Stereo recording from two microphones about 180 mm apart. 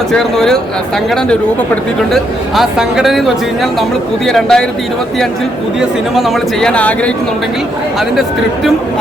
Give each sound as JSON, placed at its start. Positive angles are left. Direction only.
{"t": 0.1, "sound": "speech", "side_deg": 0}
{"t": 5.8, "sound": "speech", "side_deg": 0}